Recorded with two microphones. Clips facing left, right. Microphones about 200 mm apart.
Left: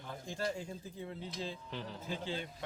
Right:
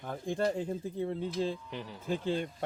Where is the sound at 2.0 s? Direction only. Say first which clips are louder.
Right 10 dB; 50° right (ahead or behind).